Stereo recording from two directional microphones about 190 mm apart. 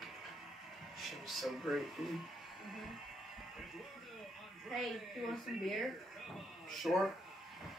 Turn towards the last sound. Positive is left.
turn(degrees=0)  # may be behind; listen again after turning